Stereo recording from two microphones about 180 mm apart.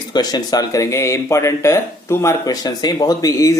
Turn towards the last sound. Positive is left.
turn(degrees=20)  # may be behind; listen again after turning